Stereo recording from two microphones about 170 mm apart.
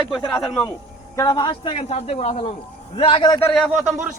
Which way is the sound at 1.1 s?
25° left (ahead or behind).